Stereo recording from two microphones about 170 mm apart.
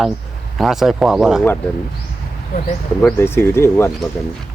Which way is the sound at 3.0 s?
15° left (ahead or behind).